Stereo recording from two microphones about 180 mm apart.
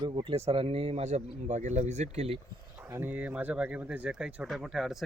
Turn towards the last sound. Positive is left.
turn(degrees=0)  # may be behind; listen again after turning